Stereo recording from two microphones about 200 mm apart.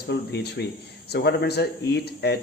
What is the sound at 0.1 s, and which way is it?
Speech, 55° left (ahead or behind).